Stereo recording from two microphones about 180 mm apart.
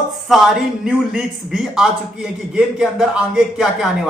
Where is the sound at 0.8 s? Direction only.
5° right (ahead or behind).